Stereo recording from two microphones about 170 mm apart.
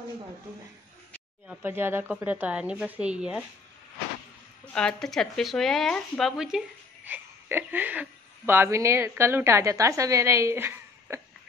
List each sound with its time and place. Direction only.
1.5 s speech: 10° right (ahead or behind)
4.7 s speech: 5° left (ahead or behind); by 11.1 s 15° right (ahead or behind)